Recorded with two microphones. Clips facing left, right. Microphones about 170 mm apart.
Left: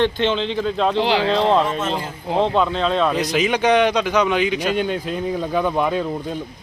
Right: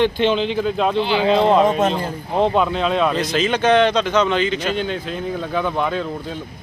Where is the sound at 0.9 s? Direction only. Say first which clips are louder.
Even; 90° left.